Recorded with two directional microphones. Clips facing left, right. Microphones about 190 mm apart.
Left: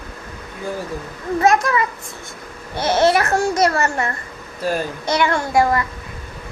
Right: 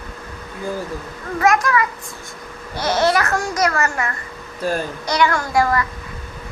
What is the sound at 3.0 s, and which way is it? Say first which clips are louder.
A child's voice: left 3 dB; 25° left (ahead or behind).